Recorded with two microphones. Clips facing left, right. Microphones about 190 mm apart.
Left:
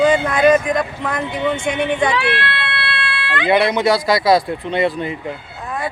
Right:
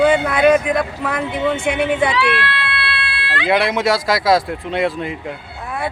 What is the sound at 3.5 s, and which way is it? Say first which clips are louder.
Speech: left 2 dB; centre (ahead or behind).